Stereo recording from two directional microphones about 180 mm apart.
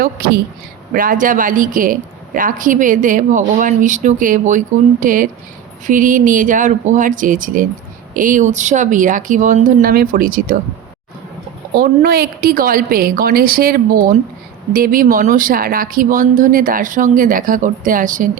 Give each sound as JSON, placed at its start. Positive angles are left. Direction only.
{"t": 0.9, "sound": "a woman's voice", "side_deg": -50}
{"t": 11.7, "sound": "a woman's voice", "side_deg": -55}